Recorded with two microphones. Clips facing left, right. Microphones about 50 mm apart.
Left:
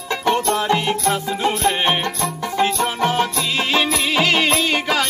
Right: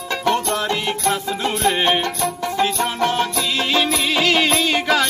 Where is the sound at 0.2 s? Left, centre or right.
Left.